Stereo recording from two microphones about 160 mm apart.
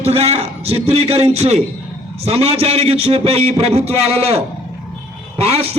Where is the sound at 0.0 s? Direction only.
40° right (ahead or behind).